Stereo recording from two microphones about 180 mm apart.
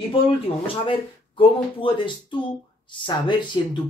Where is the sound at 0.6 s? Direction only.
30° left (ahead or behind).